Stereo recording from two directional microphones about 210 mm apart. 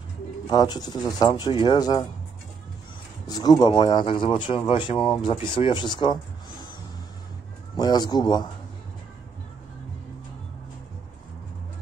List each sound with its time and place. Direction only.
0.5 s speech: 20° left (ahead or behind)
3.3 s speech: 20° left (ahead or behind)
7.7 s speech: 20° left (ahead or behind)